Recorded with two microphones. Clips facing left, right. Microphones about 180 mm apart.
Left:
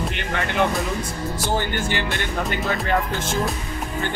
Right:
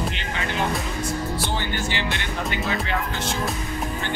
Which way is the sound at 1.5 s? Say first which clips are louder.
Left 3 dB; 50° left (ahead or behind).